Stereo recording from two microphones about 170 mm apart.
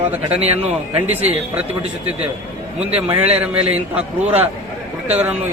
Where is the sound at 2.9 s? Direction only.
10° right (ahead or behind).